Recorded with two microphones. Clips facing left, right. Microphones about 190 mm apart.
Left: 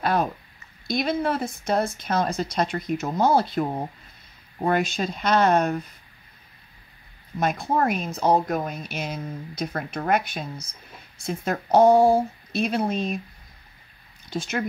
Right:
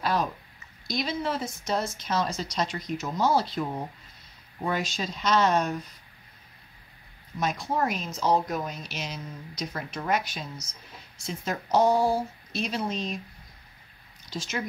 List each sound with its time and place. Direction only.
0.0 s speech: 55° left (ahead or behind)
7.3 s speech: 55° left (ahead or behind)
14.3 s speech: 55° left (ahead or behind)